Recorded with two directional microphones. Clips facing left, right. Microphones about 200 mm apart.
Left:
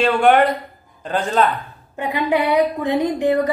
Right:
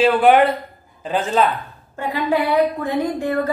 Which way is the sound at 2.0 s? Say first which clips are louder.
Left 1 dB; 20° left (ahead or behind).